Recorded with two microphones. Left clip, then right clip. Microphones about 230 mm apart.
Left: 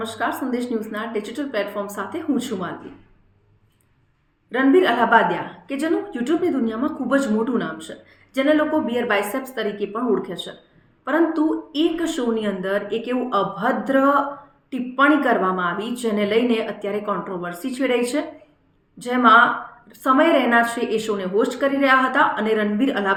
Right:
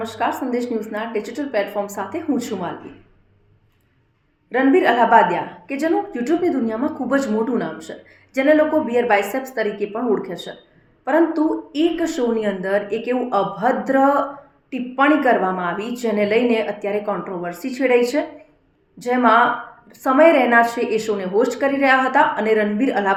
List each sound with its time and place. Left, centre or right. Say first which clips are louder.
0.0 s a woman's voice: right 2 dB; centre
4.5 s a woman's voice: right 2 dB; centre